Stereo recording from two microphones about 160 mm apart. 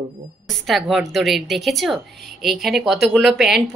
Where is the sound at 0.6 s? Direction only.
Centre (ahead or behind).